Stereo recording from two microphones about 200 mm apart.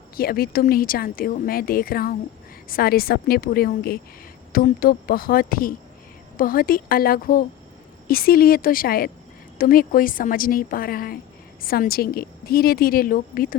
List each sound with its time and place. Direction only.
0.2 s a woman's voice: 50° left (ahead or behind)